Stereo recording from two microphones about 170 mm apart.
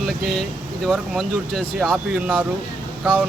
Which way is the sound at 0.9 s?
Centre (ahead or behind).